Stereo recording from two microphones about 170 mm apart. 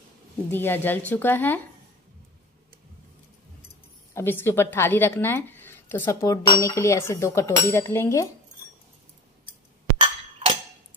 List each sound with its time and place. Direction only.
0.5 s speech: 10° left (ahead or behind)
4.1 s speech: 15° left (ahead or behind)
9.9 s a sound: 30° right (ahead or behind)